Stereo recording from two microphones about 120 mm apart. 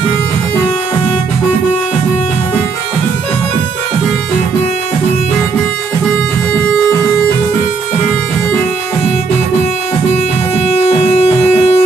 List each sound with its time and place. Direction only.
10.5 s music: 60° left (ahead or behind)